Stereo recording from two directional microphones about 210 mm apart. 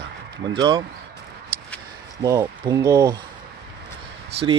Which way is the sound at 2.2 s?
15° right (ahead or behind).